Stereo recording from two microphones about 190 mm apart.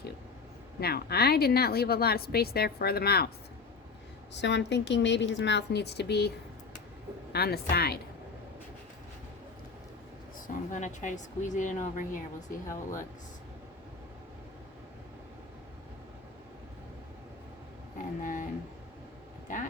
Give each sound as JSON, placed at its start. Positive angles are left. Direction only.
{"t": 0.8, "sound": "a woman's voice", "side_deg": 55}
{"t": 4.4, "sound": "a woman's voice", "side_deg": 65}
{"t": 7.3, "sound": "a woman's voice", "side_deg": 55}
{"t": 10.4, "sound": "speech", "side_deg": 40}
{"t": 17.9, "sound": "a sound", "side_deg": 45}
{"t": 19.5, "sound": "a sound", "side_deg": 40}